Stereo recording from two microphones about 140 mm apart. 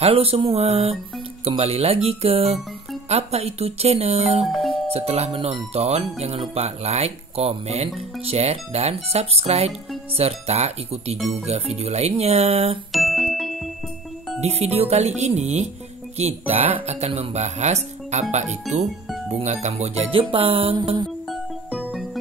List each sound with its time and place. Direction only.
0.0 s speech: 45° right (ahead or behind)
4.5 s doorbell: centre (ahead or behind)
4.8 s speech: 45° right (ahead or behind)
12.9 s music: centre (ahead or behind)
14.4 s speech: 50° right (ahead or behind); by 21.1 s 35° right (ahead or behind)
21.3 s music: centre (ahead or behind)